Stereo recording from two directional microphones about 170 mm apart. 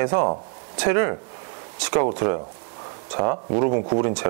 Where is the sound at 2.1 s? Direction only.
20° right (ahead or behind).